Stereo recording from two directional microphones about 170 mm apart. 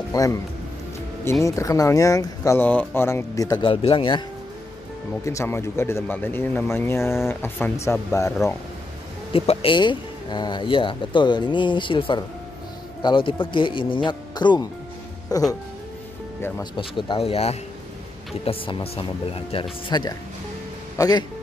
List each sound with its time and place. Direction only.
0.1 s speech: 20° left (ahead or behind)
1.4 s speech: 20° left (ahead or behind)
5.2 s speech: 15° left (ahead or behind)
9.3 s speech: 35° left (ahead or behind); by 16.6 s 15° left (ahead or behind)
16.7 s speech: 30° left (ahead or behind)